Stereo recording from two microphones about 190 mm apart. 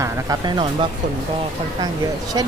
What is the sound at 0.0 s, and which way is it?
Music, 20° right (ahead or behind).